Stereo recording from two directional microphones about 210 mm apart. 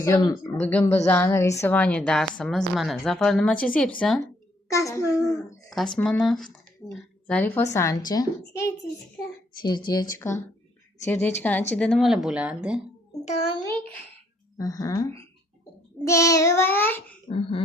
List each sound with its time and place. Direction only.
0.0 s a woman's voice: 15° left (ahead or behind)
0.6 s a woman's voice: 5° left (ahead or behind)
4.7 s a woman's voice: 15° left (ahead or behind)
5.6 s speech: 5° left (ahead or behind)
9.6 s a woman's voice: 20° left (ahead or behind); by 12.8 s 5° right (ahead or behind)
13.2 s a child's voice: 30° left (ahead or behind)
14.6 s a woman's voice: 15° left (ahead or behind)
17.2 s speech: 25° left (ahead or behind)